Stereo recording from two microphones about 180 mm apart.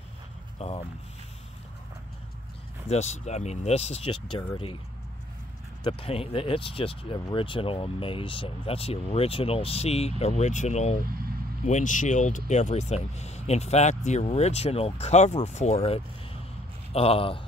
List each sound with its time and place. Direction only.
0.6 s a sound: 35° left (ahead or behind)
2.9 s speech: 40° left (ahead or behind)
5.9 s speech: 30° left (ahead or behind)
11.1 s vehicle: 55° right (ahead or behind)
11.6 s speech: 45° left (ahead or behind)